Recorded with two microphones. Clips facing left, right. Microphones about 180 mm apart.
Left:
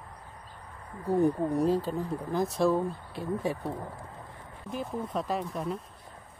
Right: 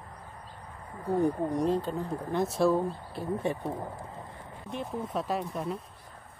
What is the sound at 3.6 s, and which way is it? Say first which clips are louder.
Speech: right 1 dB; 15° right (ahead or behind).